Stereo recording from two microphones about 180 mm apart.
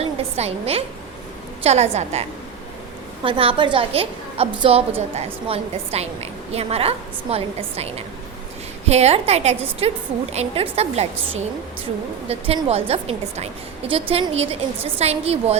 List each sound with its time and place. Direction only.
0.0 s a woman's voice: 35° right (ahead or behind)
3.2 s a woman's voice: 30° right (ahead or behind)